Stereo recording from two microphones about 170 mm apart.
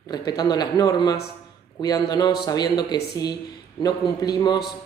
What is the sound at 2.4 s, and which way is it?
A man's voice, 25° left (ahead or behind).